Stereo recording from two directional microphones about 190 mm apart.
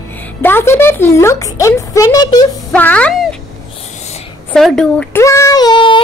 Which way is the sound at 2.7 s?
5° left (ahead or behind).